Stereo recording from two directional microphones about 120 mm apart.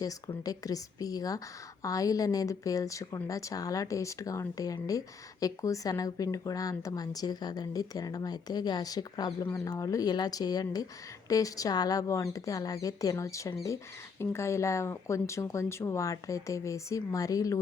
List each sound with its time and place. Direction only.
0.4 s speech: 30° left (ahead or behind)
9.4 s speech: 20° left (ahead or behind)